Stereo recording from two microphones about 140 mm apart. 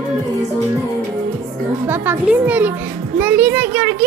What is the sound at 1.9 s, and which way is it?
A child's voice, 15° right (ahead or behind).